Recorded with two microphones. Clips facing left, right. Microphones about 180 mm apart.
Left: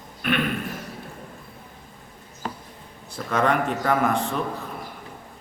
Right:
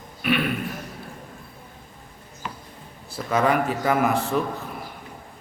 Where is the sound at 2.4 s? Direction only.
40° left (ahead or behind).